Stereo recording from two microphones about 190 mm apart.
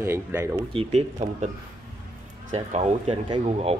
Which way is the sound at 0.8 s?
35° right (ahead or behind).